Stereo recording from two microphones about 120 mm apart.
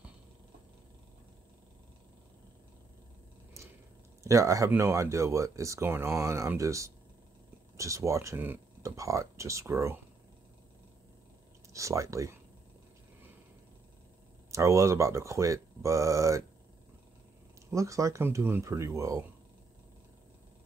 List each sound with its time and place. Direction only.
4.2 s speech: 25° right (ahead or behind)
11.7 s speech: 25° right (ahead or behind)
14.5 s speech: 25° right (ahead or behind)
17.6 s speech: 25° right (ahead or behind)